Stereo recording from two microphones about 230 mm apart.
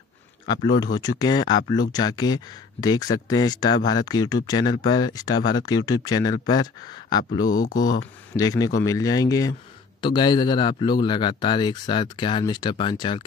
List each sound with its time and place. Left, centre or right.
0.9 s speech: centre
7.4 s speech: left
8.4 s speech: centre